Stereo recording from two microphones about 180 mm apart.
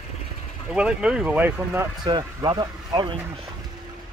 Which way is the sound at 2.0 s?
25° right (ahead or behind).